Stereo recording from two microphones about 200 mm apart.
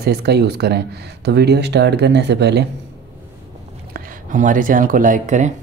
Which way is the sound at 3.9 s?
40° right (ahead or behind).